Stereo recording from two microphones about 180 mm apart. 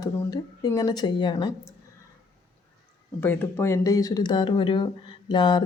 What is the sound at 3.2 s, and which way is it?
Speech, 10° left (ahead or behind).